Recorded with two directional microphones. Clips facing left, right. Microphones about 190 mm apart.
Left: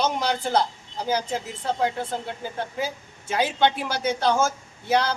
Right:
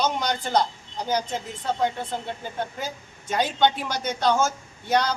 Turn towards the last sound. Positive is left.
turn(degrees=5)  # may be behind; listen again after turning